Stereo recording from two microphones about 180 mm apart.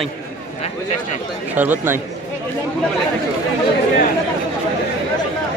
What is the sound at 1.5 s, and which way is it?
Speech, 10° right (ahead or behind).